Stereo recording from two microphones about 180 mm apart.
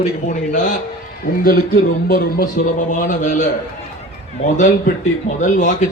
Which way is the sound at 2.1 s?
55° left (ahead or behind).